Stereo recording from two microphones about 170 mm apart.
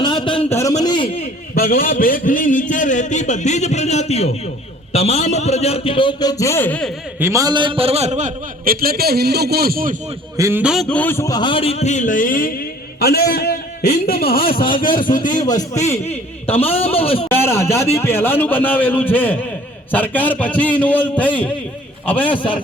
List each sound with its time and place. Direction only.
0.0 s a sound: 30° left (ahead or behind)
0.5 s a man's voice: 20° left (ahead or behind)
1.5 s a man's voice: 60° left (ahead or behind); by 6.9 s 10° left (ahead or behind)
7.2 s a man's voice: 15° right (ahead or behind); by 9.9 s 60° right (ahead or behind)
10.3 s a man's voice: 15° right (ahead or behind)
10.6 s a man's voice: centre (ahead or behind); by 12.5 s 55° left (ahead or behind)
13.0 s a man's voice: 65° left (ahead or behind)
14.4 s a man's voice: 30° left (ahead or behind)
15.0 s a man's voice: 50° left (ahead or behind)
15.4 s a man's voice: 20° left (ahead or behind)
15.8 s a man's voice: 40° left (ahead or behind)
17.2 s a man's voice: 15° left (ahead or behind)